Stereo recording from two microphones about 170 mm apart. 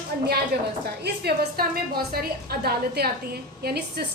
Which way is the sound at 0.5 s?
75° right (ahead or behind).